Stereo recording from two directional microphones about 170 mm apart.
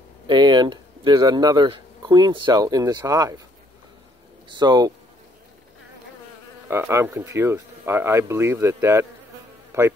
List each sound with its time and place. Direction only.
0.3 s speech: 25° right (ahead or behind)
4.5 s speech: 25° right (ahead or behind)
6.7 s speech: 15° right (ahead or behind)